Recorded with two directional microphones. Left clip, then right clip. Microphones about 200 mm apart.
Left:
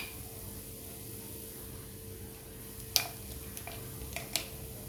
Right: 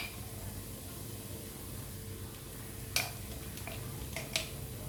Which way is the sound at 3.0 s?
40° left (ahead or behind).